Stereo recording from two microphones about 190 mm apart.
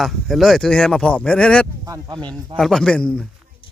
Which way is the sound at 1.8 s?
20° right (ahead or behind).